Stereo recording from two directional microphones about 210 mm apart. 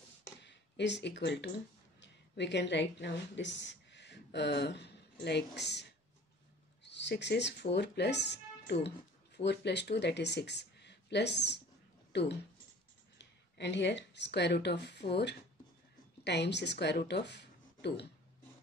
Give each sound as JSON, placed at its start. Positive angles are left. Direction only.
{"t": 0.4, "sound": "a woman's voice", "side_deg": 55}